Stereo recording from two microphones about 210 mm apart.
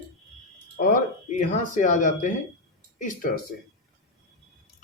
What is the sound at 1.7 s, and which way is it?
Speech, 35° left (ahead or behind).